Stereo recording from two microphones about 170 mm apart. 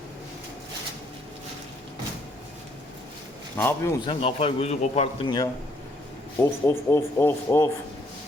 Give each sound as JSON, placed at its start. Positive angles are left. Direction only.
{"t": 3.6, "sound": "speech", "side_deg": 15}
{"t": 4.0, "sound": "a man's voice", "side_deg": 30}
{"t": 5.2, "sound": "a man's voice", "side_deg": 25}